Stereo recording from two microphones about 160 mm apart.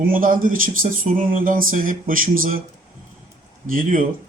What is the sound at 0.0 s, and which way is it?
Speech, 60° right (ahead or behind).